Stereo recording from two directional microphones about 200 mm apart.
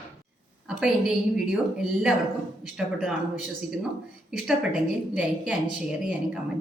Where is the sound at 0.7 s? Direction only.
Centre (ahead or behind).